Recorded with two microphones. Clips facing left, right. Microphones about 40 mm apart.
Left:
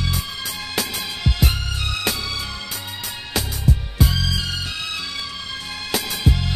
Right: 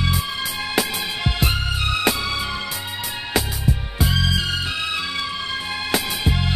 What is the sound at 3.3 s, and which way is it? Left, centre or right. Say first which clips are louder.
Music: even; centre.